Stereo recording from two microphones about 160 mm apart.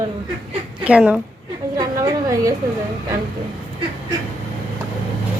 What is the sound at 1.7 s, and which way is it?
Speech, 25° right (ahead or behind).